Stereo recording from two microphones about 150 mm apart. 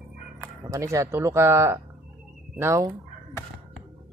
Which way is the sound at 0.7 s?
20° right (ahead or behind).